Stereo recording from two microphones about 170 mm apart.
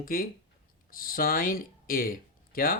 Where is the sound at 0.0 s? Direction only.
55° left (ahead or behind).